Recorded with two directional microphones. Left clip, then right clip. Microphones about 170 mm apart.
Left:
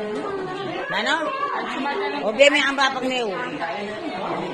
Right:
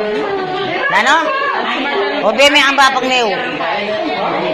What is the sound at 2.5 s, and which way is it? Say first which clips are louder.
Speech: right 10 dB; 30° left (ahead or behind).